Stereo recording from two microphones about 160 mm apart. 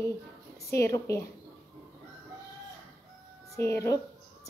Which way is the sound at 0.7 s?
20° left (ahead or behind).